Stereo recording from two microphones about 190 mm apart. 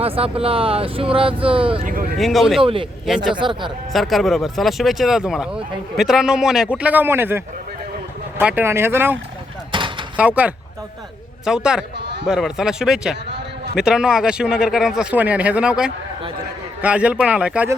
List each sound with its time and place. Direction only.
0.0 s speech: 30° right (ahead or behind)
1.8 s speech: 45° right (ahead or behind)
2.1 s speech: centre (ahead or behind)
2.6 s speech: 30° right (ahead or behind)
3.9 s speech: centre (ahead or behind)
9.7 s a sound: 25° right (ahead or behind)
10.2 s speech: 5° right (ahead or behind)
11.9 s a man's voice: 65° right (ahead or behind)
12.2 s speech: 5° right (ahead or behind)